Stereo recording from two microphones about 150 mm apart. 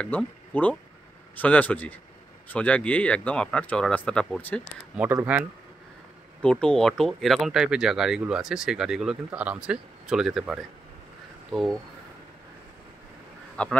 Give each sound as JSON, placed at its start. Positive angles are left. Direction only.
{"t": 0.0, "sound": "speech", "side_deg": 10}
{"t": 4.9, "sound": "speech", "side_deg": -10}
{"t": 6.4, "sound": "speech", "side_deg": 5}
{"t": 13.6, "sound": "speech", "side_deg": 10}